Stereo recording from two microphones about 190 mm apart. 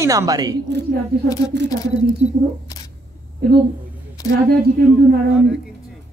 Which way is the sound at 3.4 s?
55° right (ahead or behind).